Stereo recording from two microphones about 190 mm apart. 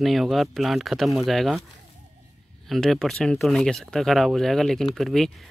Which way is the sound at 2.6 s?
Centre (ahead or behind).